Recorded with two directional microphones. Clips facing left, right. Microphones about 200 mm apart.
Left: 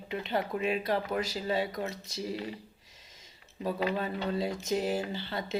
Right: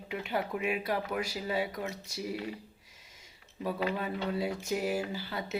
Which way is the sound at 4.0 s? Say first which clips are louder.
Left 1 dB; 10° right (ahead or behind).